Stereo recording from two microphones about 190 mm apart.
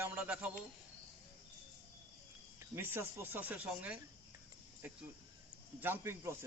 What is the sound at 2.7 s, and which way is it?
Speech, 10° right (ahead or behind).